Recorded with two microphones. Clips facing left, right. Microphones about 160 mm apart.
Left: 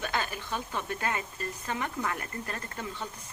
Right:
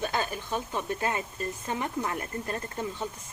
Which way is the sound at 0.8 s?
25° right (ahead or behind).